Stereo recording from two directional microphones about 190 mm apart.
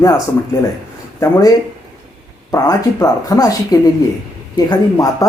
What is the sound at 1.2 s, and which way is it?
Speech, 20° left (ahead or behind).